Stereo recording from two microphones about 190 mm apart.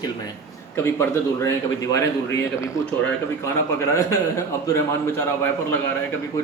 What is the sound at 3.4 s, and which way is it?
Speech, 15° left (ahead or behind).